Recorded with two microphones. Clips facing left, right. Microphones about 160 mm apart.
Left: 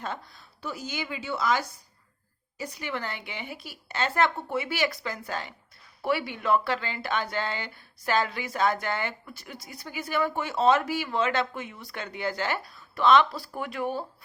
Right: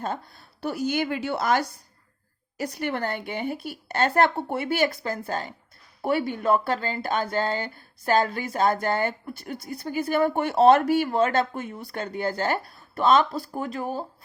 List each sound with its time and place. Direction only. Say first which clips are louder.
0.0 s speech: right 5 dB; 45° right (ahead or behind)
0.6 s a woman's voice: right 9 dB; 65° right (ahead or behind)
2.7 s speech: right 6 dB; 55° right (ahead or behind)
5.3 s speech: right 4 dB; 40° right (ahead or behind)